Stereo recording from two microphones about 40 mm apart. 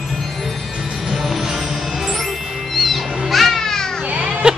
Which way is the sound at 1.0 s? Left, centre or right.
Centre.